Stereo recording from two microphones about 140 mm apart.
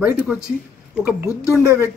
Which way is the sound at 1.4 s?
20° left (ahead or behind).